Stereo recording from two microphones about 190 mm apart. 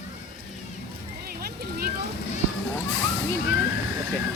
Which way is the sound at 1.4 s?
55° right (ahead or behind).